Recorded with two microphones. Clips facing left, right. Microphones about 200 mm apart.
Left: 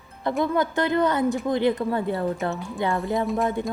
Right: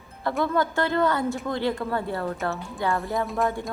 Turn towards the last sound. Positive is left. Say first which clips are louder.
# left 2 dB
turn(degrees=0)  # may be behind; listen again after turning